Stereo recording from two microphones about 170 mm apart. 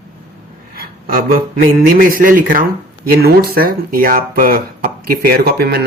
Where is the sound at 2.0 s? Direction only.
55° right (ahead or behind).